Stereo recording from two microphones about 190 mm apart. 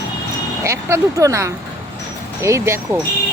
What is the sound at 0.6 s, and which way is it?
Speech, 15° right (ahead or behind).